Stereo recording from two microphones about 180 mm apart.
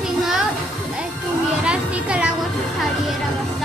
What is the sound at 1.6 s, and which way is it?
Speech, 5° right (ahead or behind).